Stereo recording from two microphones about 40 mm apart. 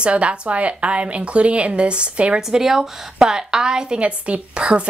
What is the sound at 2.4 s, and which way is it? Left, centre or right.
A woman's voice, centre.